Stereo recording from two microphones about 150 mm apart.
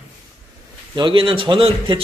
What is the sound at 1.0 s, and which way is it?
Speech, 30° right (ahead or behind).